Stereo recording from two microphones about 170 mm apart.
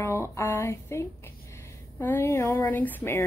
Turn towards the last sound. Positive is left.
turn(degrees=10)  # may be behind; listen again after turning